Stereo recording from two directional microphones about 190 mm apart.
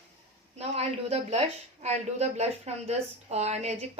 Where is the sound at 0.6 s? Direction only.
35° right (ahead or behind).